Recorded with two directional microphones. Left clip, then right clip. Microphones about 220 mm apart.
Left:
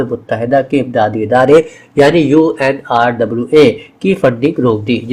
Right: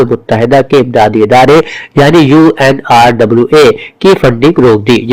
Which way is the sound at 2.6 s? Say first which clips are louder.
Right 6 dB; 40° right (ahead or behind).